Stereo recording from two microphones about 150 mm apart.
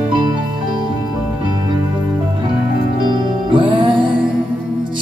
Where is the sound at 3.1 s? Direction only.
35° right (ahead or behind).